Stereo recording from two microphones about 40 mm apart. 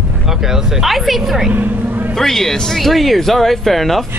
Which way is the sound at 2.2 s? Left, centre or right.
Centre.